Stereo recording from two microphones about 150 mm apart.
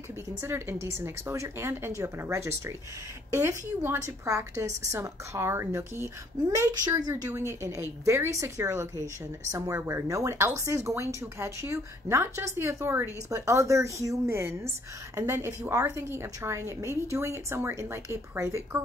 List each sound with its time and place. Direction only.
0.4 s a woman's voice: 20° right (ahead or behind)